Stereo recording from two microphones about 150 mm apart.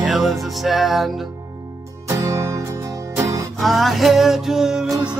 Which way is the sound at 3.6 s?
Centre (ahead or behind).